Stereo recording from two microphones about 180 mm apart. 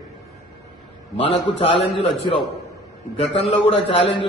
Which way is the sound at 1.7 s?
85° left.